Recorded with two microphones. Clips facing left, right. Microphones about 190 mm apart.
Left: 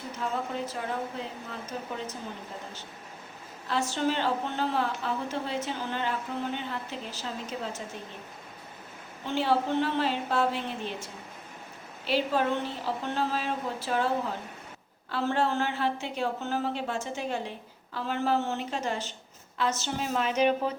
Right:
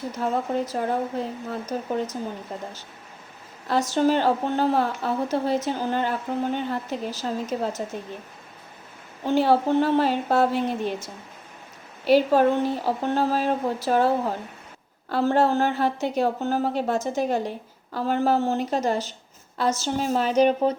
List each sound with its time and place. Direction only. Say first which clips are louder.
0.2 s a woman's voice: right 7 dB; 40° right (ahead or behind)
3.7 s a woman's voice: right 7 dB; 40° right (ahead or behind)
9.2 s a woman's voice: right 7 dB; 40° right (ahead or behind)